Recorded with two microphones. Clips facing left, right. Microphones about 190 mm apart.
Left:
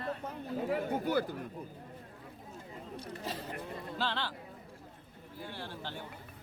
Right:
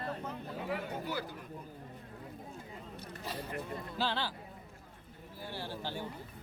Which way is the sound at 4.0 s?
10° right (ahead or behind).